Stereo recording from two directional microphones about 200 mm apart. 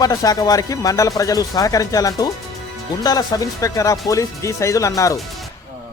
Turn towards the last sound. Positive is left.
turn(degrees=15)  # may be behind; listen again after turning